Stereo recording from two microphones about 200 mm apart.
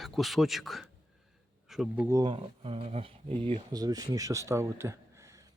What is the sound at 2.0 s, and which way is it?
Speech, 15° right (ahead or behind).